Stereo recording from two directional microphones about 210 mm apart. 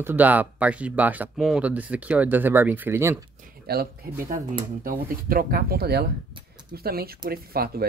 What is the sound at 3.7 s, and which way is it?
Speech, 50° right (ahead or behind).